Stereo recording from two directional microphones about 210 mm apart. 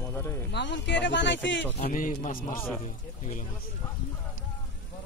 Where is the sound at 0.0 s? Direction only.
10° left (ahead or behind).